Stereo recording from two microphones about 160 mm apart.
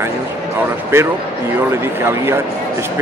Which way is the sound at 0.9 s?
15° right (ahead or behind).